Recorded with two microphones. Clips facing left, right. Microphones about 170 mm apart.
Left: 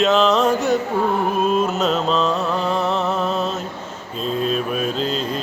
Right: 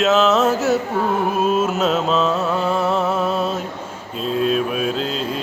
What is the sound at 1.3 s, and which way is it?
Music, 5° right (ahead or behind).